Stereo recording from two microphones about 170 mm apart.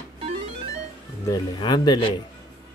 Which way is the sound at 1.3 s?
25° left (ahead or behind).